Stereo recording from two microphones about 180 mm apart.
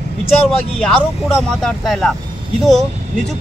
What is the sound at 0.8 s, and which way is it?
Speech, 5° left (ahead or behind).